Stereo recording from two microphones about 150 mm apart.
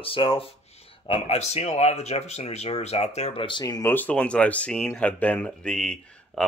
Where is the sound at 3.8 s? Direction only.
10° left (ahead or behind).